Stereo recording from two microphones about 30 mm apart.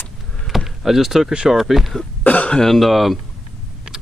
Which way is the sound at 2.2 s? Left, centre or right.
Left.